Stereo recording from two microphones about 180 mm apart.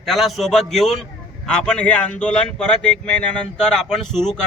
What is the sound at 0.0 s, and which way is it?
Speech, centre (ahead or behind).